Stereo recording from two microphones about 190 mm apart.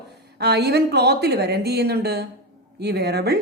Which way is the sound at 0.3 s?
60° right (ahead or behind).